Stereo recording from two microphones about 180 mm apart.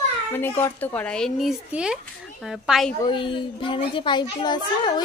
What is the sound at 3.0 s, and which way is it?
A woman's voice, 30° left (ahead or behind).